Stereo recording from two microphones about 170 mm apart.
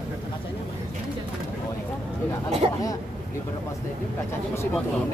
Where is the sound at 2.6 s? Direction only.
30° right (ahead or behind).